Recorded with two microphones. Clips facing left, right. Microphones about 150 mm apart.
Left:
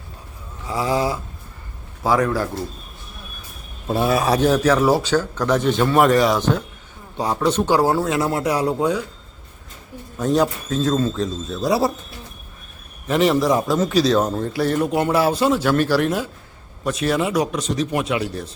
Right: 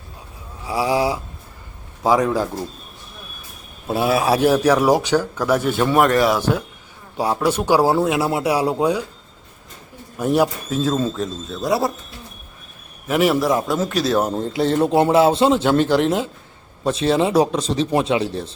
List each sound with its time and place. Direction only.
0.6 s speech: 10° right (ahead or behind)
3.8 s speech: 5° right (ahead or behind)
10.2 s speech: 10° right (ahead or behind)
13.1 s a man's voice: 5° right (ahead or behind)
14.3 s speech: 20° right (ahead or behind)